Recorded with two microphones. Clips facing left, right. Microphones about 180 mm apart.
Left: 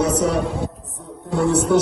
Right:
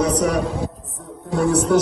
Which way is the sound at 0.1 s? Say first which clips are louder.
Even; centre (ahead or behind).